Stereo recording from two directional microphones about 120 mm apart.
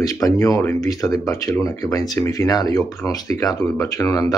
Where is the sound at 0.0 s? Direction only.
30° left (ahead or behind).